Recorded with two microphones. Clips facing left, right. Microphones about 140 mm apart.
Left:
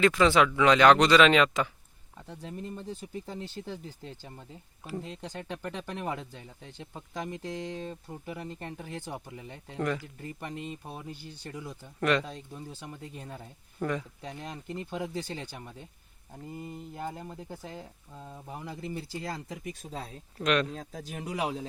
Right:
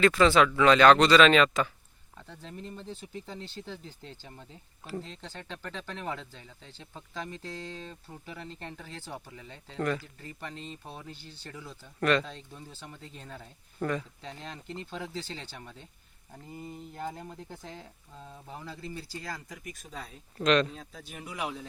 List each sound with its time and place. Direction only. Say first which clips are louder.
0.0 s speech: right 1 dB; 15° left (ahead or behind)
20.4 s speech: right 2 dB; 5° left (ahead or behind)
20.7 s speech: left 5 dB; 40° left (ahead or behind)